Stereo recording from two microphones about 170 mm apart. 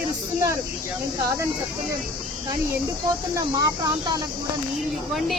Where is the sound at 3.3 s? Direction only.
20° right (ahead or behind).